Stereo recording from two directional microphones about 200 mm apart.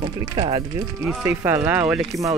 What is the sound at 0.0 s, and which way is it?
Speech, 20° right (ahead or behind).